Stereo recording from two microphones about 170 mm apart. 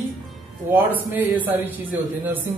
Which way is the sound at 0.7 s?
10° right (ahead or behind).